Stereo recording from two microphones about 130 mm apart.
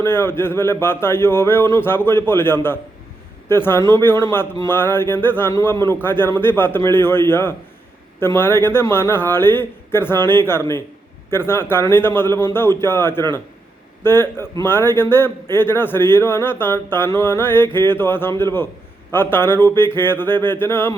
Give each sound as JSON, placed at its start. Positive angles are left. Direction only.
{"t": 0.0, "sound": "a man's voice", "side_deg": 20}